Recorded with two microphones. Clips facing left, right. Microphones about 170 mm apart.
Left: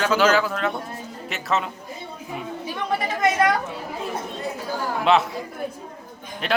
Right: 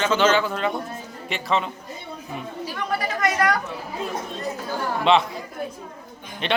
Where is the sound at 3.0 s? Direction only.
25° left (ahead or behind).